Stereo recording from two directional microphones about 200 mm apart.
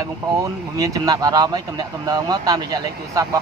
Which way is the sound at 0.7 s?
15° right (ahead or behind).